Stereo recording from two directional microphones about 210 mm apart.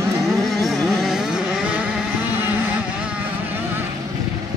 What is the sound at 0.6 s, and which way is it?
Music, centre (ahead or behind).